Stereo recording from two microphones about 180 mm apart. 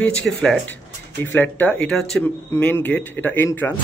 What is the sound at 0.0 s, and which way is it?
Speech, 5° left (ahead or behind).